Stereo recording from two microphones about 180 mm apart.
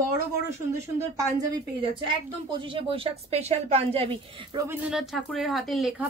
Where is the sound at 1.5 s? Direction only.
30° right (ahead or behind).